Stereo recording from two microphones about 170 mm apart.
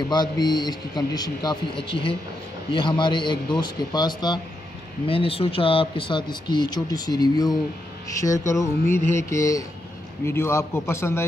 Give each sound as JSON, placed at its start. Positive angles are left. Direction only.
{"t": 0.1, "sound": "a man's voice", "side_deg": 25}